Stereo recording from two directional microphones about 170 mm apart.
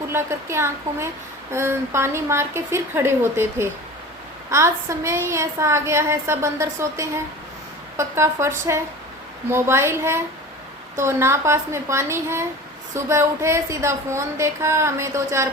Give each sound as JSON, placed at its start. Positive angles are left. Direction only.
{"t": 0.1, "sound": "a woman's voice", "side_deg": -15}